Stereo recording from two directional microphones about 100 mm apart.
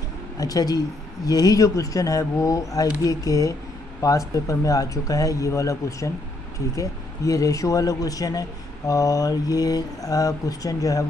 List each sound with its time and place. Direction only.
0.4 s a man's voice: 35° left (ahead or behind)